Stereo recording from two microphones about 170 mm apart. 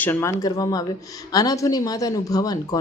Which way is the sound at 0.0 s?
15° left (ahead or behind).